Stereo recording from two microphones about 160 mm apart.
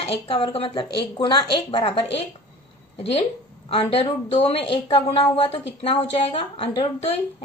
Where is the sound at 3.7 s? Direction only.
40° left (ahead or behind).